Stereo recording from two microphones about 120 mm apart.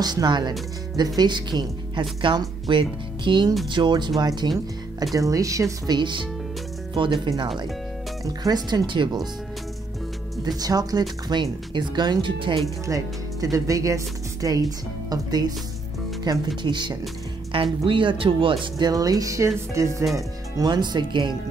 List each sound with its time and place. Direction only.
0.0 s speech: 35° right (ahead or behind)
5.9 s speech: 40° right (ahead or behind)
7.3 s speech: 40° right (ahead or behind)
10.6 s speech: 30° right (ahead or behind)
12.8 s speech: 30° right (ahead or behind)